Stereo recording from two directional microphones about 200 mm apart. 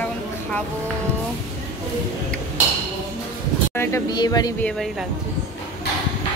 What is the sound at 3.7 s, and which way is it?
Speech, 15° left (ahead or behind).